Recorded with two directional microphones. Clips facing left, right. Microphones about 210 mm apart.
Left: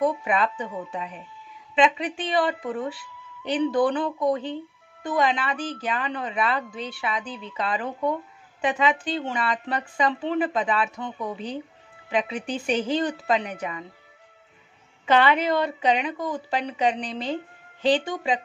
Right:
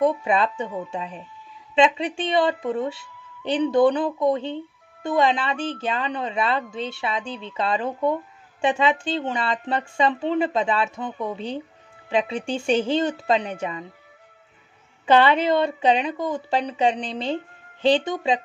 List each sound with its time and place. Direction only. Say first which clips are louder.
0.0 s a woman's voice: right 3 dB; 30° right (ahead or behind)
15.0 s a woman's voice: right 3 dB; 30° right (ahead or behind)